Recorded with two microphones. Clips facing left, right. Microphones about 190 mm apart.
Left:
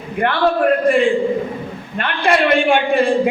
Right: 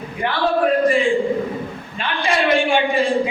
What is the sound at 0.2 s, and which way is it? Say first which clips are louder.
A man's voice: left 3 dB; 60° left (ahead or behind).